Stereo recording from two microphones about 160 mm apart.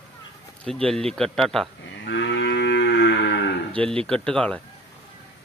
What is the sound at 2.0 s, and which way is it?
Moo, 90° left.